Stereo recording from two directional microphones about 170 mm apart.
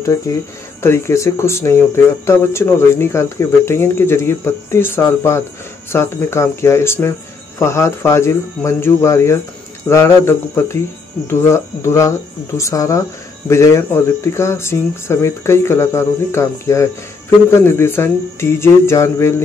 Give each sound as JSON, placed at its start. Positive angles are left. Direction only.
{"t": 0.3, "sound": "speech", "side_deg": 20}